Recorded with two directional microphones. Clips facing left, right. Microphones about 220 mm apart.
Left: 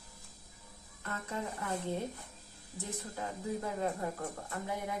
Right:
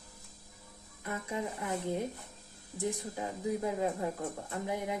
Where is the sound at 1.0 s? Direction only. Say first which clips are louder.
Right 3 dB; 15° right (ahead or behind).